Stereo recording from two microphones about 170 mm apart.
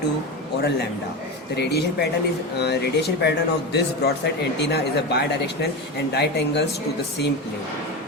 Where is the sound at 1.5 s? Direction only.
75° left (ahead or behind).